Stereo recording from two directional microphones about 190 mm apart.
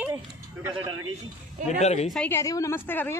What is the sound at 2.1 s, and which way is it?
A woman's voice, 10° left (ahead or behind).